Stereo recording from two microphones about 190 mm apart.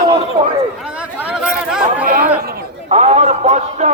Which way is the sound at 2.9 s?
35° right (ahead or behind).